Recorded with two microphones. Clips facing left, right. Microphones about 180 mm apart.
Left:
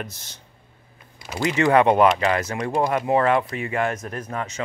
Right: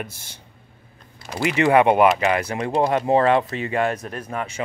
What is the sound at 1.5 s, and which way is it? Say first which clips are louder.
Speech: right 1 dB; 15° right (ahead or behind).